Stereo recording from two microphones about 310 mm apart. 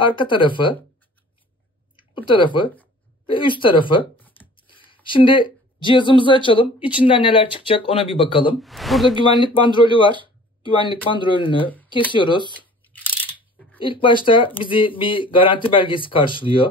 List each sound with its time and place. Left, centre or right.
0.1 s speech: centre
2.0 s speech: centre
4.2 s a sound: centre
4.6 s speech: centre
8.5 s speech: centre
9.3 s speech: centre
13.7 s speech: centre